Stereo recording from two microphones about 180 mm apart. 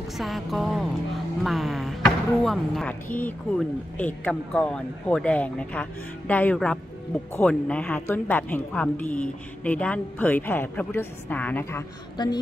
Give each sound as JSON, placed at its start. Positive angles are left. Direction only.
{"t": 0.2, "sound": "speech", "side_deg": 0}
{"t": 1.4, "sound": "a sound", "side_deg": 0}
{"t": 3.2, "sound": "speech", "side_deg": 10}
{"t": 12.2, "sound": "speech", "side_deg": 25}